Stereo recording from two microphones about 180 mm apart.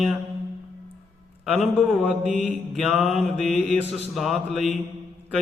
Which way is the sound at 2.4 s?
5° right (ahead or behind).